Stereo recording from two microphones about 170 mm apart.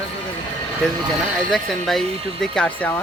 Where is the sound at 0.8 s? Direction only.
5° left (ahead or behind).